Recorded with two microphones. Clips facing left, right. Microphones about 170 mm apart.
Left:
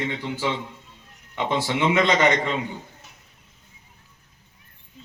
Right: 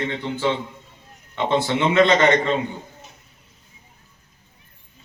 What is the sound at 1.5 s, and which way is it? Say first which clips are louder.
Speech: right 4 dB; 10° left (ahead or behind).